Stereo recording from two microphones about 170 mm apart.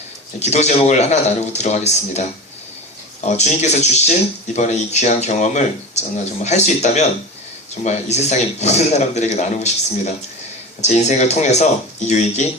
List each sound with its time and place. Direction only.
0.3 s speech: 40° left (ahead or behind)
3.2 s speech: 40° left (ahead or behind)
10.8 s speech: 40° left (ahead or behind)